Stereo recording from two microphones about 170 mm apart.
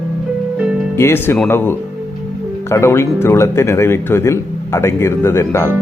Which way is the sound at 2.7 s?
15° left (ahead or behind).